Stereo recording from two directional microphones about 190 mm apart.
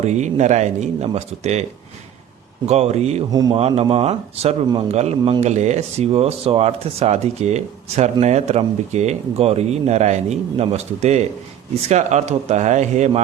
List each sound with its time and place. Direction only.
0.0 s speech: 35° right (ahead or behind)
2.6 s speech: 35° right (ahead or behind)
3.3 s speech: 20° right (ahead or behind); by 13.2 s 40° right (ahead or behind)